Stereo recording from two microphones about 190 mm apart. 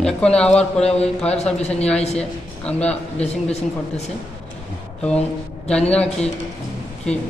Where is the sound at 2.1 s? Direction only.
5° left (ahead or behind).